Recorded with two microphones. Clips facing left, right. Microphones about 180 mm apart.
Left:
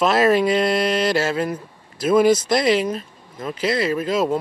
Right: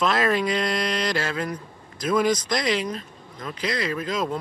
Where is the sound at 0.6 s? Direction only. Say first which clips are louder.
Left 6 dB; 5° left (ahead or behind).